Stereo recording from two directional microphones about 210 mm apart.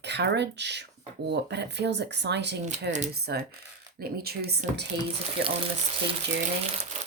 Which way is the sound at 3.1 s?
50° right (ahead or behind).